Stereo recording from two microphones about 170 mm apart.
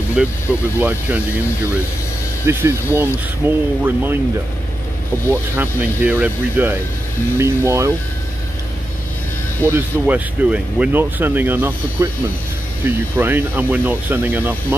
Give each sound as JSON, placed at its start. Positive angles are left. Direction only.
{"t": 0.2, "sound": "speech", "side_deg": -5}
{"t": 2.4, "sound": "speech", "side_deg": -15}
{"t": 5.3, "sound": "speech", "side_deg": -10}
{"t": 9.6, "sound": "speech", "side_deg": -15}